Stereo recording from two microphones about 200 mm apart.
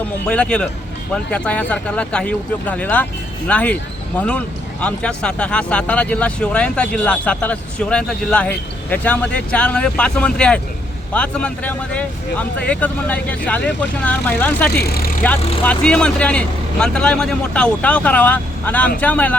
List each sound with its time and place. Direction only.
0.3 s speech: 5° left (ahead or behind)
14.7 s speech: 50° left (ahead or behind)
15.6 s speech: 5° left (ahead or behind)